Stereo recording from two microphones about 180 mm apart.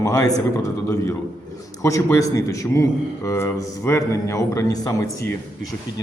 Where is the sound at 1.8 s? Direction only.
15° left (ahead or behind).